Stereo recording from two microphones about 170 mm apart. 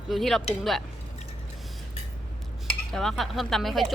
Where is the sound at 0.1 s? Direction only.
Centre (ahead or behind).